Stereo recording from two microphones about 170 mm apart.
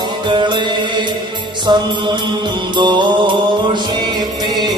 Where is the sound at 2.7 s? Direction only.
25° right (ahead or behind).